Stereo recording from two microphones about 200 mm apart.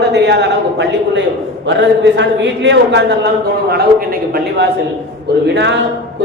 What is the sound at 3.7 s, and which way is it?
Speech, 50° right (ahead or behind).